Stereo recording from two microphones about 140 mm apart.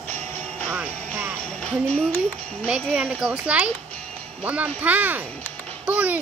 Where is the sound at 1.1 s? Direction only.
15° right (ahead or behind).